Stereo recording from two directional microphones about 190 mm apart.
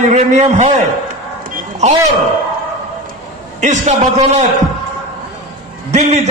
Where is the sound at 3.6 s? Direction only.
40° right (ahead or behind).